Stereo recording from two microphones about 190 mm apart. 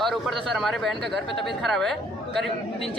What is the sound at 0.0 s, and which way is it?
Speech, centre (ahead or behind).